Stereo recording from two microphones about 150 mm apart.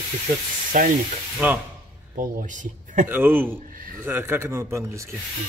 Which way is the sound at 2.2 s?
60° right (ahead or behind).